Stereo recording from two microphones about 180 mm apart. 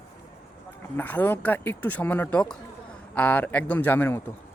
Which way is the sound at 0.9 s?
10° left (ahead or behind).